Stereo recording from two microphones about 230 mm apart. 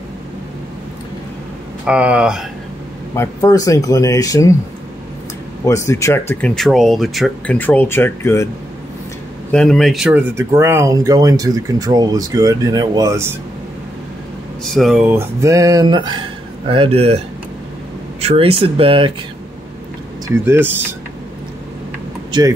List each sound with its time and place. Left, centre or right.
1.9 s speech: centre
3.2 s speech: centre
5.7 s speech: centre
9.5 s speech: centre
14.6 s speech: centre; by 17.2 s right
18.2 s speech: right
20.4 s speech: centre
22.3 s speech: centre